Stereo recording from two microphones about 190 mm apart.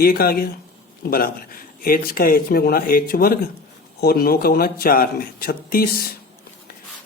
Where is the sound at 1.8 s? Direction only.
50° left (ahead or behind).